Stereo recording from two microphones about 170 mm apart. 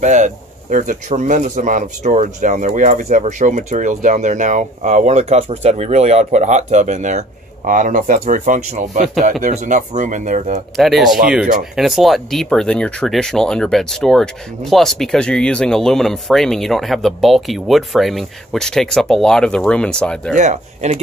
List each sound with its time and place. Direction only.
0.0 s speech: 45° right (ahead or behind)
10.8 s speech: centre (ahead or behind)
20.3 s speech: 40° right (ahead or behind)